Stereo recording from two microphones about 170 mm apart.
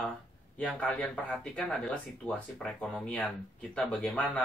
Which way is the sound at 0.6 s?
5° left (ahead or behind).